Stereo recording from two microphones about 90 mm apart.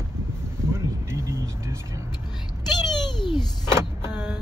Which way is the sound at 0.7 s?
30° right (ahead or behind).